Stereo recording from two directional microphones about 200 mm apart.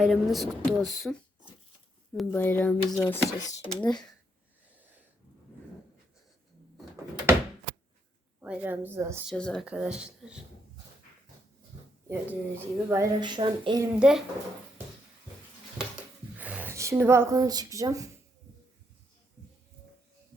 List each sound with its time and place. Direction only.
0.0 s speech: centre (ahead or behind)
2.1 s speech: 10° left (ahead or behind)
8.4 s a woman's voice: 10° right (ahead or behind)
9.3 s speech: 5° left (ahead or behind)
12.0 s a woman's voice: 10° right (ahead or behind)
14.0 s speech: centre (ahead or behind)
16.4 s speech: 10° right (ahead or behind)